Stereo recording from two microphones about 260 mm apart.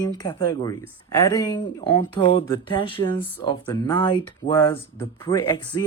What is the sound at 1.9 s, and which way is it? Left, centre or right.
Speech, left.